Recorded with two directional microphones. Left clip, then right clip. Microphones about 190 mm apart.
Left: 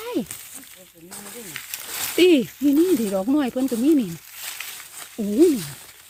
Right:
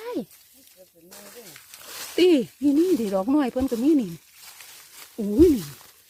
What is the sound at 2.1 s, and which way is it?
Speech, 5° right (ahead or behind).